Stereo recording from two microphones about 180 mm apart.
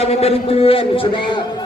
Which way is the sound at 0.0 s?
35° left (ahead or behind).